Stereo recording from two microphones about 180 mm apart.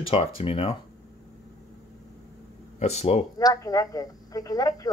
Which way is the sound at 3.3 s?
20° left (ahead or behind).